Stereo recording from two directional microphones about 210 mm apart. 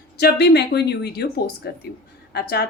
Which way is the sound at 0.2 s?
50° left (ahead or behind).